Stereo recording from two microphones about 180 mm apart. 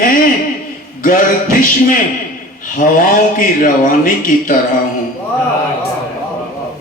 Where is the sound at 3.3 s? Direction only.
50° left (ahead or behind).